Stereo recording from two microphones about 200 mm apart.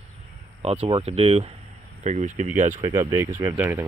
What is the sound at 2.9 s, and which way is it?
Speech, 15° right (ahead or behind).